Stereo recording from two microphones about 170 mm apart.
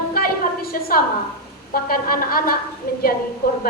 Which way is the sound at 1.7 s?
60° left (ahead or behind).